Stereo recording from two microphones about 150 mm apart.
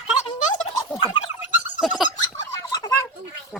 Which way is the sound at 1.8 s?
Centre (ahead or behind).